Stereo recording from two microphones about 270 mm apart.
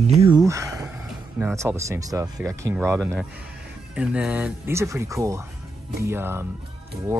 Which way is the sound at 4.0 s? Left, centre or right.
Centre.